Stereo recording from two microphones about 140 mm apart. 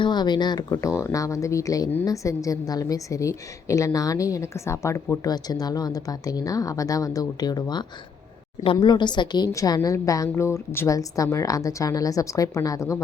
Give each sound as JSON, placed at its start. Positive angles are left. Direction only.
{"t": 0.0, "sound": "a woman's voice", "side_deg": 30}